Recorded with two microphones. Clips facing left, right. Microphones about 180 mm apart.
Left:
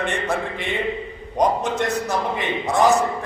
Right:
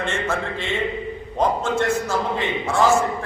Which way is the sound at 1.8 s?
15° left (ahead or behind).